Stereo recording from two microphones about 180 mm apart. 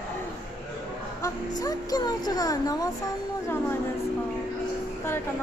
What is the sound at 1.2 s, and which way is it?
Speech, 20° left (ahead or behind).